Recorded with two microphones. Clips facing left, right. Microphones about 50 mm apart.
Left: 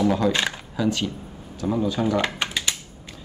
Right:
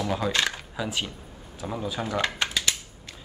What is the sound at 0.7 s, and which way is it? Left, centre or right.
Speech, centre.